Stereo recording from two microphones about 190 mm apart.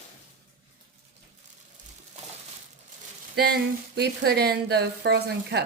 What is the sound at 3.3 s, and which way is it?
Speech, 55° right (ahead or behind).